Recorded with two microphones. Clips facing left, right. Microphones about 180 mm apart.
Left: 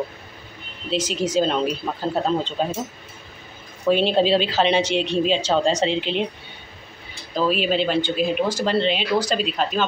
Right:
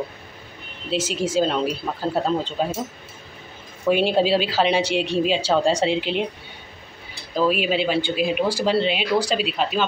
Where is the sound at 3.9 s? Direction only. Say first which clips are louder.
Left 1 dB; 10° right (ahead or behind).